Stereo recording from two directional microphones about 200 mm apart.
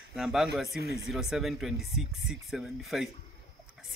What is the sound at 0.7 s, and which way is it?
Speech, 50° right (ahead or behind).